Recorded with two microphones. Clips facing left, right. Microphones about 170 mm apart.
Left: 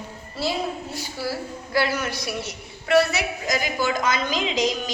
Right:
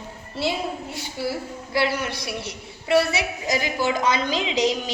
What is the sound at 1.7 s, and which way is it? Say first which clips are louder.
A woman's voice: even; 25° right (ahead or behind).